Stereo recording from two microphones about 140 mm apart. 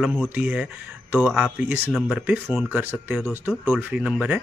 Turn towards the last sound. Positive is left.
turn(degrees=-10)  # may be behind; listen again after turning